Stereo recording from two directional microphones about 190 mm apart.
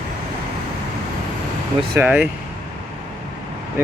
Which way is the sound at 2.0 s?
5° right (ahead or behind).